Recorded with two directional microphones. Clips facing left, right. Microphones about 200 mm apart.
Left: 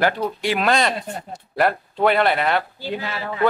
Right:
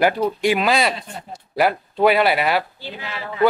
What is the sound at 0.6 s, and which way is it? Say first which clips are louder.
Speech: even; 5° right (ahead or behind).